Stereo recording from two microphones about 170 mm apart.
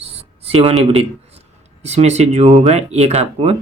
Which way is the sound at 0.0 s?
35° right (ahead or behind).